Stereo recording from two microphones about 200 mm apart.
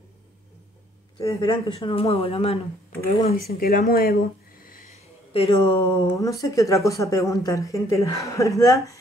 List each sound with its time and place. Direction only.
1.2 s speech: 25° left (ahead or behind)
3.5 s a sound: 45° left (ahead or behind); by 5.5 s 30° left (ahead or behind)
5.7 s speech: 20° left (ahead or behind)